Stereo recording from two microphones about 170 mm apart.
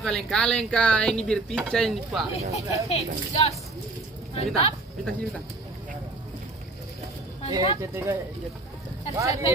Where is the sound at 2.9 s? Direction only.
40° left (ahead or behind).